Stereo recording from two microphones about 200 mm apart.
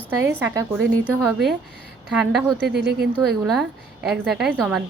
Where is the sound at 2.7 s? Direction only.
55° right (ahead or behind).